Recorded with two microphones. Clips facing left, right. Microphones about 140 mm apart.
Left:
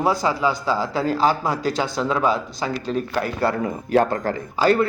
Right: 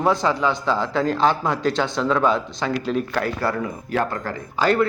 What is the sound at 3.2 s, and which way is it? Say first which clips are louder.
Speech: left 1 dB; 25° left (ahead or behind).